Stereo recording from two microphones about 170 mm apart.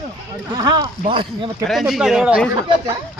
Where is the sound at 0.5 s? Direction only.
25° right (ahead or behind).